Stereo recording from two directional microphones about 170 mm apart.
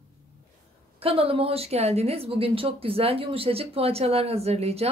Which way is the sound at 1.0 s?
35° right (ahead or behind).